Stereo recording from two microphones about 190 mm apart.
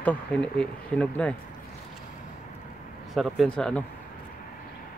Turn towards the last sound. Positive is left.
turn(degrees=5)  # may be behind; listen again after turning